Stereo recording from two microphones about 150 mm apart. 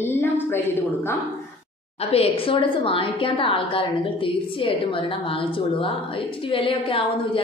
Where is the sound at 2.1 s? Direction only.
40° left (ahead or behind).